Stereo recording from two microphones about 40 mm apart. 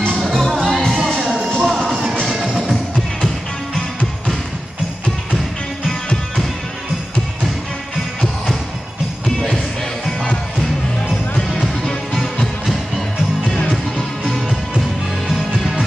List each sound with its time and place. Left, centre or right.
0.2 s music: centre
13.9 s music: centre